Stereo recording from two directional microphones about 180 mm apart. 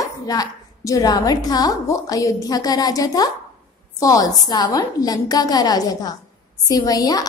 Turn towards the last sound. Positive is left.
turn(degrees=20)  # may be behind; listen again after turning